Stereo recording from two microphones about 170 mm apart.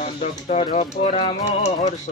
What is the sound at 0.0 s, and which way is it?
Music, 40° left (ahead or behind).